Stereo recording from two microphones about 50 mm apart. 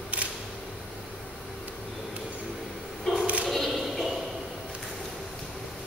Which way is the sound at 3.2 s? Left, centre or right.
Right.